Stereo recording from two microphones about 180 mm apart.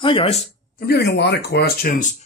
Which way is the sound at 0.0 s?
30° left (ahead or behind).